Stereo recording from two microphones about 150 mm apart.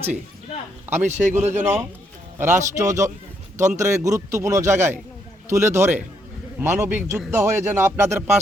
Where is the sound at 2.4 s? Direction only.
15° right (ahead or behind).